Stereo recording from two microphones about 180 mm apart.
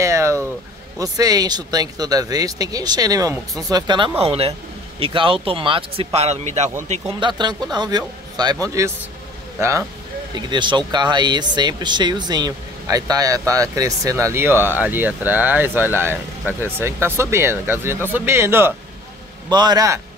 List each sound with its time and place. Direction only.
0.0 s a sound: 15° right (ahead or behind)
0.9 s speech: 20° right (ahead or behind); by 6.7 s 40° right (ahead or behind)
7.2 s speech: 25° right (ahead or behind)